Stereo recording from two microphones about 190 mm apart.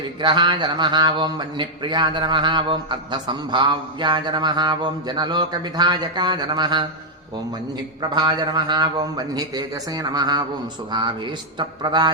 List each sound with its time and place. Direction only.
0.2 s a man's voice: 25° right (ahead or behind)
8.1 s a man's voice: 25° right (ahead or behind)